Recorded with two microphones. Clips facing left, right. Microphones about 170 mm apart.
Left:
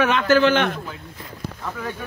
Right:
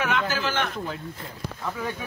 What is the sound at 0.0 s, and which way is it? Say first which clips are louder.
Speech: left 9 dB; 70° left (ahead or behind).